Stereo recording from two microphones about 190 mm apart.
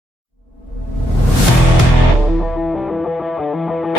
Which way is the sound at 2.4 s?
Centre (ahead or behind).